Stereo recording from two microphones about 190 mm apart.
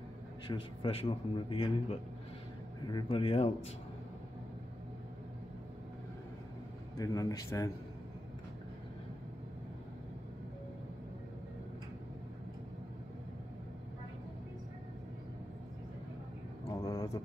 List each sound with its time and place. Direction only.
0.5 s a man's voice: 30° left (ahead or behind)
7.0 s a man's voice: 20° left (ahead or behind)
16.8 s a sound: 20° left (ahead or behind)